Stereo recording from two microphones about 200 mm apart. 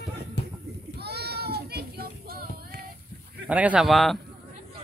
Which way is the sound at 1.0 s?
55° right (ahead or behind).